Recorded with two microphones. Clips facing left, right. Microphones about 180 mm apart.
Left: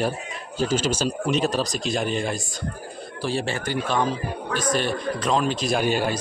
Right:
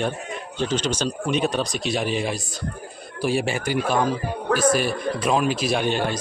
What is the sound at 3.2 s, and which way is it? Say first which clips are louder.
A man's voice: right 3 dB; 15° right (ahead or behind).